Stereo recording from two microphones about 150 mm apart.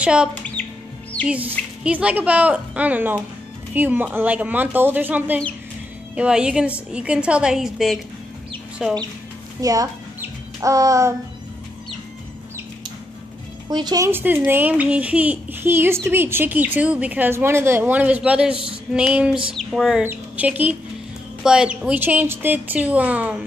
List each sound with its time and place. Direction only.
0.0 s speech: 5° right (ahead or behind)
0.3 s squawk: 10° left (ahead or behind)
1.2 s speech: 10° right (ahead or behind)
8.8 s a sound: 5° right (ahead or behind)
9.6 s speech: 25° right (ahead or behind)
10.6 s child singing: 20° right (ahead or behind)
13.7 s speech: 30° right (ahead or behind); by 19.3 s 5° right (ahead or behind)
19.5 s a sound: centre (ahead or behind)
20.1 s speech: 10° right (ahead or behind)